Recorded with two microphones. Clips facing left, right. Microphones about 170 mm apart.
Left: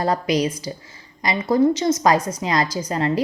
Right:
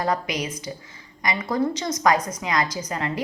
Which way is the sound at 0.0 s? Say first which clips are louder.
Left 5 dB; 35° left (ahead or behind).